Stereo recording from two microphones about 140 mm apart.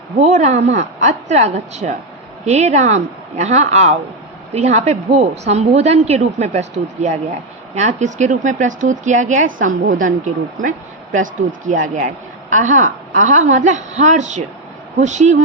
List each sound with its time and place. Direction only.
0.2 s a woman's voice: 55° right (ahead or behind)
11.1 s a woman's voice: 70° right (ahead or behind)